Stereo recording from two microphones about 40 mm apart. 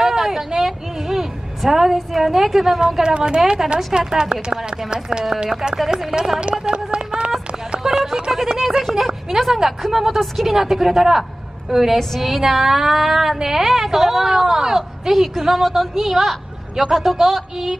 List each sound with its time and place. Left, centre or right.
0.0 s a sound: centre
3.4 s speech: centre
6.6 s run: right
7.8 s a woman's voice: centre